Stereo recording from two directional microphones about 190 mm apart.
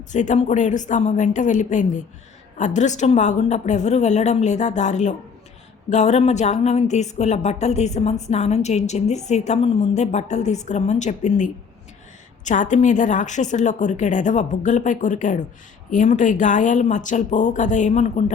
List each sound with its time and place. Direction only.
0.1 s a woman's voice: 40° left (ahead or behind)